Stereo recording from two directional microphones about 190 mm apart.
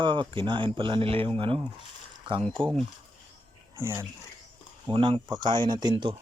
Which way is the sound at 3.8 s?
10° right (ahead or behind).